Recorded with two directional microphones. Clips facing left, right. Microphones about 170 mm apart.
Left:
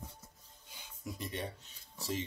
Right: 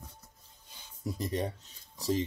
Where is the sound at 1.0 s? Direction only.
40° right (ahead or behind).